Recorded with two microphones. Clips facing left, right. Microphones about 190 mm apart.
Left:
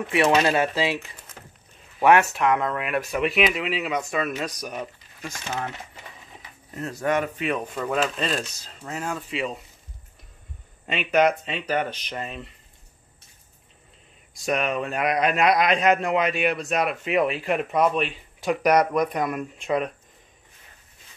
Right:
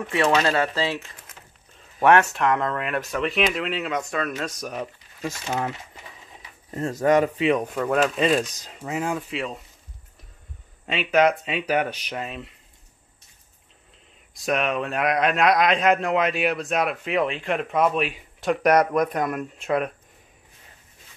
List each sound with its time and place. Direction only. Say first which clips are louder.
0.1 s speech: left 1 dB; 15° left (ahead or behind)
1.4 s a sound: left 4 dB; 50° left (ahead or behind)
2.0 s a man's voice: even; 5° left (ahead or behind)
6.9 s speech: right 5 dB; 40° right (ahead or behind)
7.6 s speech: right 3 dB; centre (ahead or behind)
9.3 s a man's voice: left 1 dB; centre (ahead or behind)
10.9 s a man's voice: right 1 dB; centre (ahead or behind)
14.3 s a man's voice: right 1 dB; centre (ahead or behind)